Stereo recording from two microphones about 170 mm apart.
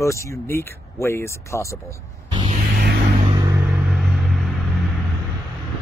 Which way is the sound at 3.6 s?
5° right (ahead or behind).